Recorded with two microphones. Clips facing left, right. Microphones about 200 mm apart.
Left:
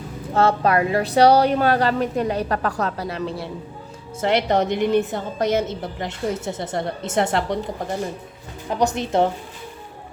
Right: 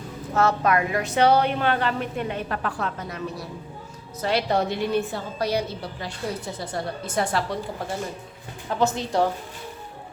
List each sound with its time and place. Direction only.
0.3 s a woman's voice: 30° left (ahead or behind)